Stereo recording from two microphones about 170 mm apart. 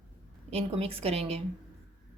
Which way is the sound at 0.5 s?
35° right (ahead or behind).